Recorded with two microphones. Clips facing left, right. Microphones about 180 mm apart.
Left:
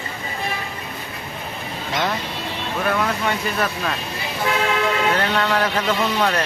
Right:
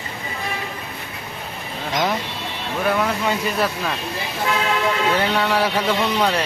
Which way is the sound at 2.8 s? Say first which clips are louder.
Right 2 dB; 15° right (ahead or behind).